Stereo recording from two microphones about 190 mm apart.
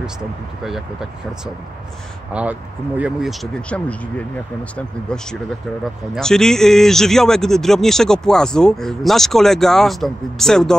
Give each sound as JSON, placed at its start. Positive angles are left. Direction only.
{"t": 2.4, "sound": "speech", "side_deg": -5}